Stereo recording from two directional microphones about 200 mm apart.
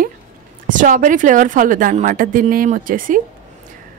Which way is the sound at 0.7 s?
40° right (ahead or behind).